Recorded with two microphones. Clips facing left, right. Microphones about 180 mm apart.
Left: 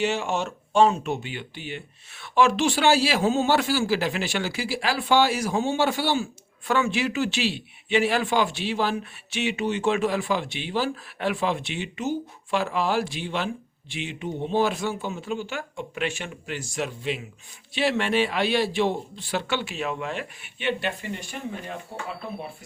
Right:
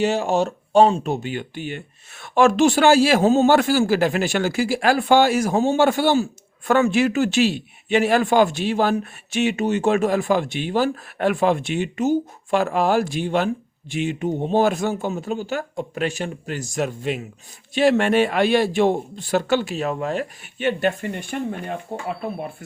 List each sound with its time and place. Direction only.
0.0 s speech: 40° right (ahead or behind); by 22.0 s 55° right (ahead or behind)